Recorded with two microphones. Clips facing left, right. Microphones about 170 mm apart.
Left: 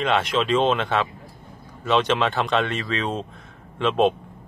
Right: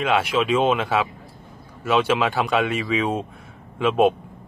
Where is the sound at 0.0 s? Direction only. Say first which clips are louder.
Right 1 dB; 5° right (ahead or behind).